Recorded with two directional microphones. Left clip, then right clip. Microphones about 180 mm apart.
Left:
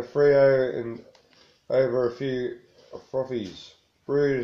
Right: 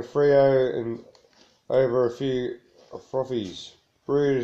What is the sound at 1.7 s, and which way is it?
Speech, 45° right (ahead or behind).